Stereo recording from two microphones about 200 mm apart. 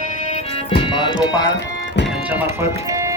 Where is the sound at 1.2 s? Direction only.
20° left (ahead or behind).